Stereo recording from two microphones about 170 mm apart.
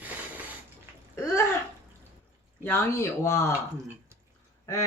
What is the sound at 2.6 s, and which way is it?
Speech, 15° left (ahead or behind).